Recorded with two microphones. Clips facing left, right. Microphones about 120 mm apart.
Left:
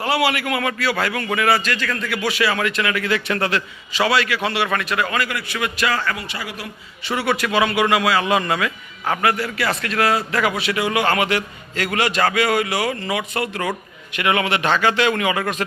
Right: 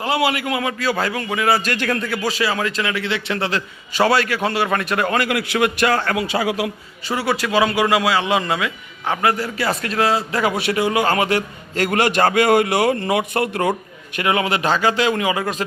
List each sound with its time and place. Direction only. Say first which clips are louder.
0.0 s a man's voice: even; 25° right (ahead or behind)
1.6 s a man's voice: right 3 dB; 40° right (ahead or behind)
2.0 s a man's voice: even; 30° right (ahead or behind)
3.5 s a man's voice: left 1 dB; 45° right (ahead or behind)
5.2 s a man's voice: right 5 dB; 80° right
5.5 s a man's voice: right 4 dB; 55° right (ahead or behind)
6.1 s a man's voice: right 11 dB; 90° right
7.1 s a man's voice: right 1 dB; 30° right (ahead or behind)
9.2 s a man's voice: right 1 dB; 35° right (ahead or behind)
14.2 s a man's voice: right 1 dB; 30° right (ahead or behind)